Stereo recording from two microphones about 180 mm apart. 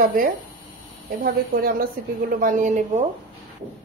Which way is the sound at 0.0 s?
50° right (ahead or behind).